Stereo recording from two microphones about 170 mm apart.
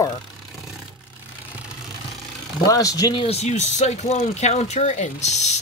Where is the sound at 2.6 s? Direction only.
20° left (ahead or behind); by 5.5 s 40° left (ahead or behind).